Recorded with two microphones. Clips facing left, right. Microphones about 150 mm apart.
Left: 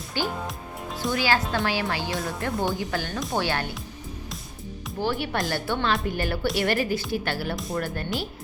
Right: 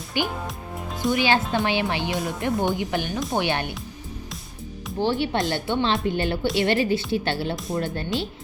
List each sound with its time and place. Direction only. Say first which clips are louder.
0.1 s speech: right 2 dB; 15° right (ahead or behind)
4.9 s speech: right 4 dB; 25° right (ahead or behind)